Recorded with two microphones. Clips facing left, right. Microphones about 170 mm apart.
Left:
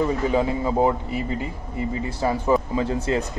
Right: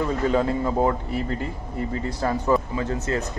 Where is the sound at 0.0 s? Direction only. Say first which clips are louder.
Left 1 dB; 10° left (ahead or behind).